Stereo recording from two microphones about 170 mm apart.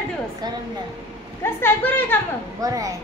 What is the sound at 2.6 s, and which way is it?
Speech, 20° right (ahead or behind).